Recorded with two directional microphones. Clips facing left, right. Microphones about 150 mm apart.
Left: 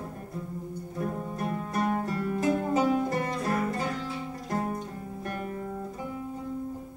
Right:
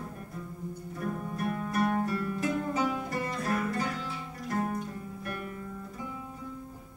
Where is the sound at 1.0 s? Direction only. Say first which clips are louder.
Even; 25° left (ahead or behind).